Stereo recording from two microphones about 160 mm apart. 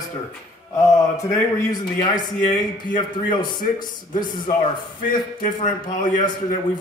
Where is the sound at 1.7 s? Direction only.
25° left (ahead or behind).